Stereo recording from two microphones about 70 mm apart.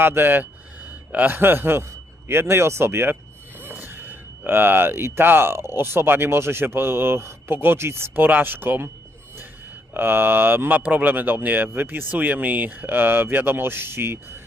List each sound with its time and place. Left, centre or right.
0.0 s speech: right
9.9 s speech: right